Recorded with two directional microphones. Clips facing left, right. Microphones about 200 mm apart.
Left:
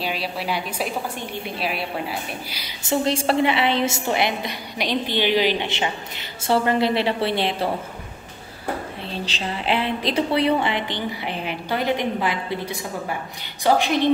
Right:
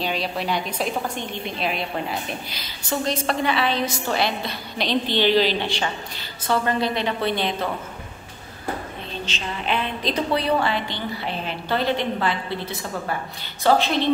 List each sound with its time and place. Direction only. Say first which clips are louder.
0.0 s a woman's voice: right 1 dB; 5° left (ahead or behind)
2.8 s a woman's voice: left 3 dB; 25° left (ahead or behind)
9.2 s a woman's voice: left 2 dB; 30° left (ahead or behind); by 14.0 s 15° left (ahead or behind)